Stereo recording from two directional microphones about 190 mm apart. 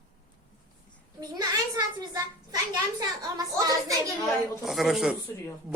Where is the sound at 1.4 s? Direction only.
20° right (ahead or behind).